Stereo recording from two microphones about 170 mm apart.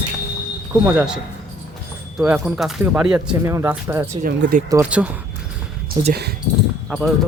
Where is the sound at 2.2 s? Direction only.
5° right (ahead or behind).